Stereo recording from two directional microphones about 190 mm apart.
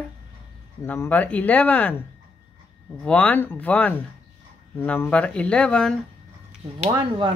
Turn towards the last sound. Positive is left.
turn(degrees=-25)  # may be behind; listen again after turning